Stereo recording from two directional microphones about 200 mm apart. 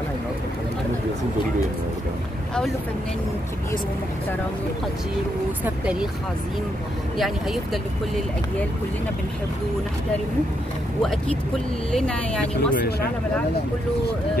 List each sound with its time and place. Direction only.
7.2 s speech: centre (ahead or behind)
11.9 s speech: 5° left (ahead or behind)
12.7 s speech: 50° left (ahead or behind)